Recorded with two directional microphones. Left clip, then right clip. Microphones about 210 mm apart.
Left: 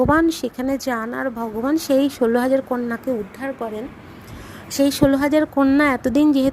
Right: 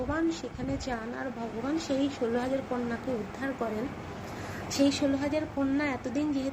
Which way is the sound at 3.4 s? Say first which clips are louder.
Left 7 dB; 40° left (ahead or behind).